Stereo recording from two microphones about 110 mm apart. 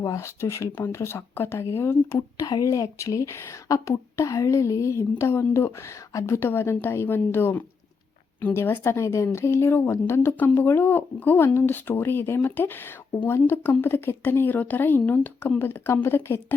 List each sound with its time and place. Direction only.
0.0 s speech: 30° left (ahead or behind)